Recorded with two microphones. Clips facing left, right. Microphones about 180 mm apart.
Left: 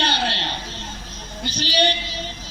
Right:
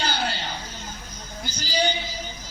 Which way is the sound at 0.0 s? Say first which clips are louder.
Left 3 dB; 30° left (ahead or behind).